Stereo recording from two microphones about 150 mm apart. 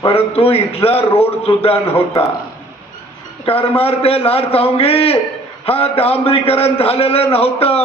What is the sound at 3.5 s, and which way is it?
A man's voice, 40° left (ahead or behind).